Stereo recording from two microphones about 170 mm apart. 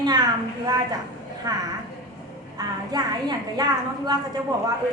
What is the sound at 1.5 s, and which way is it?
A woman's voice, 20° right (ahead or behind).